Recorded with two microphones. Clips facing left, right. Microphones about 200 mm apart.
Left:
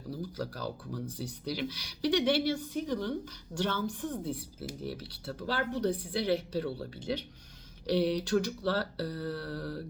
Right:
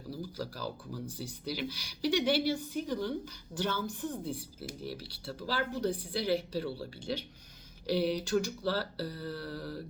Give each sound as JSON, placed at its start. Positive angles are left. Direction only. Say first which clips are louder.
{"t": 0.1, "sound": "speech", "louder": "left 2 dB", "side_deg": -5}